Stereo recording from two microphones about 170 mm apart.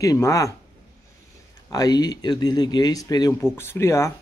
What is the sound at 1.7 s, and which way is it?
A man's voice, 20° left (ahead or behind).